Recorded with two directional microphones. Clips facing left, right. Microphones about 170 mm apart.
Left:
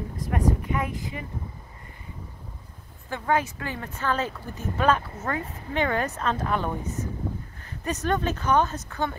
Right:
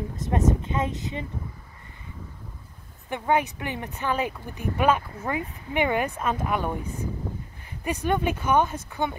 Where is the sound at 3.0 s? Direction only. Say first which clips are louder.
Right 1 dB; 20° right (ahead or behind).